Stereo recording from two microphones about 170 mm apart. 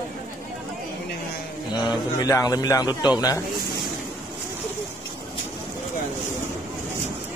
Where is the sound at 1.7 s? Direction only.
30° left (ahead or behind).